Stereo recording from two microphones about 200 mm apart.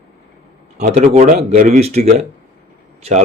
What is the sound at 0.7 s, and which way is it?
Speech, 35° right (ahead or behind).